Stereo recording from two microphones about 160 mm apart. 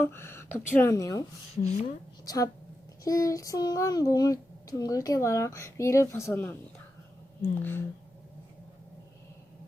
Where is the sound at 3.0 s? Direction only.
20° left (ahead or behind).